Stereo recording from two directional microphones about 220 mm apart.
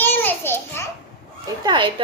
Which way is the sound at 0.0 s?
10° left (ahead or behind).